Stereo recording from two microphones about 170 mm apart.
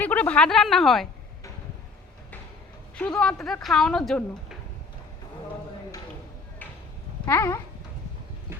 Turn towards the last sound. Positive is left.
turn(degrees=15)  # may be behind; listen again after turning